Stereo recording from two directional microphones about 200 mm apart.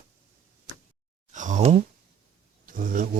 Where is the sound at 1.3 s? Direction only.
40° right (ahead or behind).